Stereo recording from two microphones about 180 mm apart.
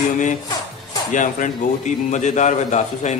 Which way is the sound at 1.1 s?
45° left (ahead or behind).